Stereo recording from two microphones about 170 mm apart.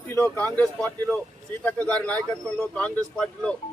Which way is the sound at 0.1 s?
5° left (ahead or behind).